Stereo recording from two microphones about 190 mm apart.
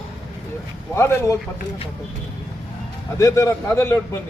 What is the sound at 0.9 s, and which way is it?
Speech, 15° left (ahead or behind).